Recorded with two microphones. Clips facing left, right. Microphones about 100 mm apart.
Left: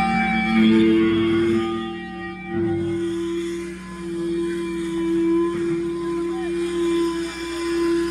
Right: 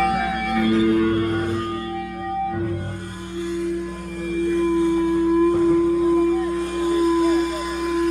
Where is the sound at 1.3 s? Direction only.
25° right (ahead or behind).